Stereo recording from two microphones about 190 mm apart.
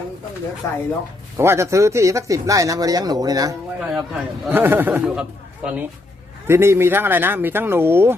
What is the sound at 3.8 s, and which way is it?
Speech, centre (ahead or behind).